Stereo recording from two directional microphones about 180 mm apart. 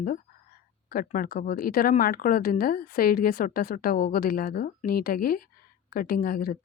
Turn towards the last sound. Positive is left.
turn(degrees=55)  # may be behind; listen again after turning